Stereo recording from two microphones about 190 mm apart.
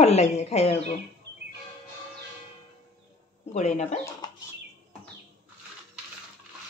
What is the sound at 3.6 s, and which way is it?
Speech, 40° left (ahead or behind).